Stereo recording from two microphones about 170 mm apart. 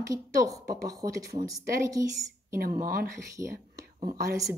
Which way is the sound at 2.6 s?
60° right (ahead or behind).